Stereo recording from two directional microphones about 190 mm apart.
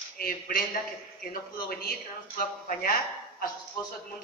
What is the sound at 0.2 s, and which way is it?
A man's voice, 50° left (ahead or behind).